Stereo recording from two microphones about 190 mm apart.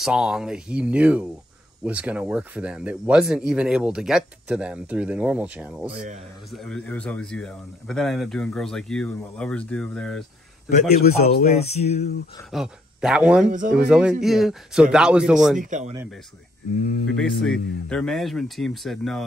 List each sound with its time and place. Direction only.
0.0 s speech: centre (ahead or behind)
10.7 s music: 40° left (ahead or behind)
12.4 s speech: centre (ahead or behind)
15.6 s speech: 40° right (ahead or behind)
16.7 s speech: 45° left (ahead or behind)
17.1 s speech: centre (ahead or behind)